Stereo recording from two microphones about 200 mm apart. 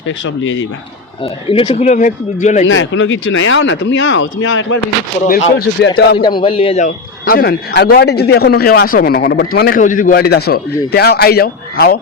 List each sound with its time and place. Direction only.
0.3 s speech: 70° left (ahead or behind)
1.2 s speech: 25° left (ahead or behind)
2.6 s speech: 70° left (ahead or behind)
5.2 s speech: 50° left (ahead or behind)
6.2 s a man's voice: 25° left (ahead or behind)
7.3 s speech: 50° left (ahead or behind)